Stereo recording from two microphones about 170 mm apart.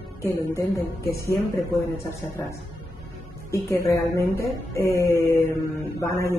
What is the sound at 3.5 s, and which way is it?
Speech, 15° left (ahead or behind).